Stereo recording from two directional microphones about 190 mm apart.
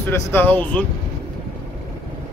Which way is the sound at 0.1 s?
10° left (ahead or behind).